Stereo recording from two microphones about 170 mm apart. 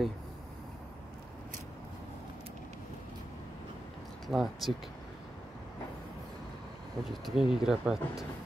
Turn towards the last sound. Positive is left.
turn(degrees=-5)  # may be behind; listen again after turning